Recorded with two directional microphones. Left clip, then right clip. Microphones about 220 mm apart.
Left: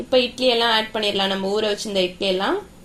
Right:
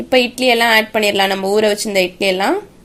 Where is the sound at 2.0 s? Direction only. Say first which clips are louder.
Right 5 dB; 75° right (ahead or behind).